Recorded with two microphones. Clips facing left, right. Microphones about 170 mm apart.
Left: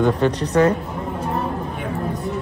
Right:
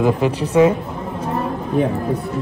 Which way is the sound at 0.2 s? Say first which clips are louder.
Right 2 dB; centre (ahead or behind).